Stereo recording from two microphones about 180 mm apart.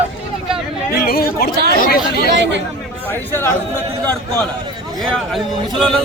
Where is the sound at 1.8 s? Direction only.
55° left (ahead or behind).